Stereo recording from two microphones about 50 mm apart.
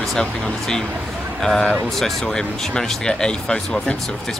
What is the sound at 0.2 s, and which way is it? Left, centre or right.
Speech, centre.